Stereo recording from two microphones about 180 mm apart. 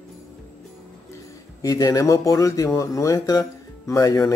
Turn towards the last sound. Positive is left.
turn(degrees=20)  # may be behind; listen again after turning